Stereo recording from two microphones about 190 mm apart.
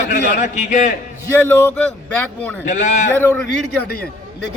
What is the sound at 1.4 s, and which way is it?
Speech, 10° left (ahead or behind).